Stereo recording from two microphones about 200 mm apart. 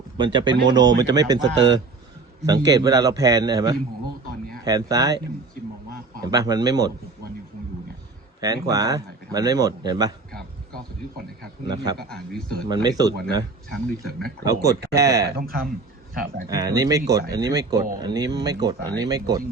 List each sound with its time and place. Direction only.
0.3 s speech: 20° right (ahead or behind)
2.5 s speech: 20° right (ahead or behind)
8.4 s speech: 20° right (ahead or behind)
11.9 s speech: 20° right (ahead or behind)
12.3 s speech: 5° left (ahead or behind)
12.6 s speech: 20° right (ahead or behind)
13.7 s speech: 5° left (ahead or behind)
14.4 s speech: 15° right (ahead or behind)
15.4 s speech: 45° right (ahead or behind)
16.5 s speech: 15° right (ahead or behind)